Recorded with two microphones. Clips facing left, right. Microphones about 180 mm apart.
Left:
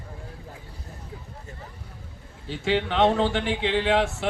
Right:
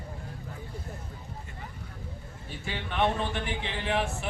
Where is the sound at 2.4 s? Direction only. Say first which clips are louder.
Left 12 dB; 90° left.